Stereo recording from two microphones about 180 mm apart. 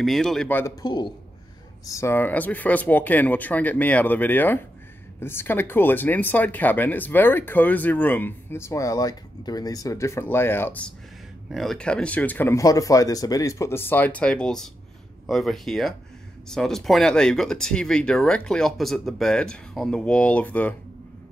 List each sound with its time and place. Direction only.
0.0 s speech: centre (ahead or behind)
0.8 s a man's voice: 25° left (ahead or behind)
1.9 s speech: 15° left (ahead or behind)